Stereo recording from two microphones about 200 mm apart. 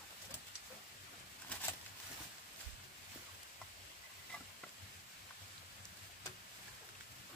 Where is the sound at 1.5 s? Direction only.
10° left (ahead or behind).